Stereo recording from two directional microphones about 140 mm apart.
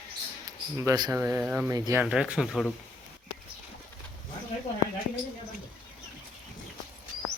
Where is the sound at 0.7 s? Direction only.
20° right (ahead or behind).